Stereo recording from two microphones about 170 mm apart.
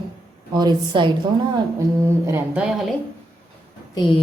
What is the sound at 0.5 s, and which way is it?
Speech, 25° right (ahead or behind).